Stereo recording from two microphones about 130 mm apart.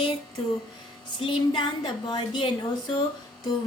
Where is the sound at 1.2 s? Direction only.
40° left (ahead or behind).